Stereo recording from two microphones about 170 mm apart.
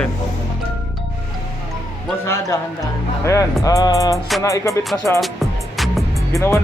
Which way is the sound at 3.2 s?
20° left (ahead or behind).